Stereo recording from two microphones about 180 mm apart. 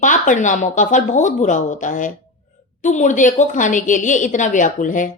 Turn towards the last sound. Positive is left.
turn(degrees=45)  # may be behind; listen again after turning